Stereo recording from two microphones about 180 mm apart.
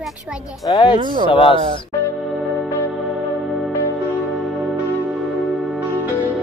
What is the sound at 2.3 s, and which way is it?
Music, 5° left (ahead or behind).